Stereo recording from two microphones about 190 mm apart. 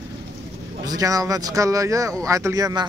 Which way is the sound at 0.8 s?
20° right (ahead or behind).